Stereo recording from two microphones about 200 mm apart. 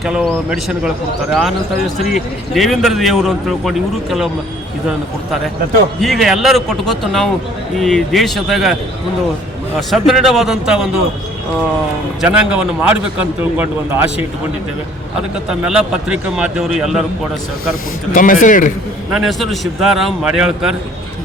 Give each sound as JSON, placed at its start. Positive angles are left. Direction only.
{"t": 0.0, "sound": "a man's voice", "side_deg": 0}
{"t": 2.6, "sound": "a man's voice", "side_deg": 0}
{"t": 6.0, "sound": "a man's voice", "side_deg": 0}
{"t": 9.9, "sound": "a man's voice", "side_deg": 0}
{"t": 12.2, "sound": "a man's voice", "side_deg": -5}
{"t": 15.4, "sound": "a man's voice", "side_deg": -5}
{"t": 18.1, "sound": "speech", "side_deg": 40}
{"t": 19.1, "sound": "a man's voice", "side_deg": 0}